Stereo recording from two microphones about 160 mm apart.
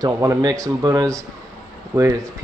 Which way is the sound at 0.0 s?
20° right (ahead or behind).